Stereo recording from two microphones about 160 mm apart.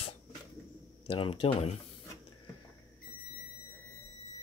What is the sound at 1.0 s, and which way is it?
Speech, 35° left (ahead or behind).